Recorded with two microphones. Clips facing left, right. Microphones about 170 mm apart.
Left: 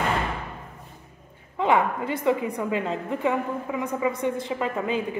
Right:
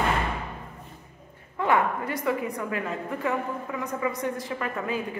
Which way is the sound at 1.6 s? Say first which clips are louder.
Left 2 dB; 25° left (ahead or behind).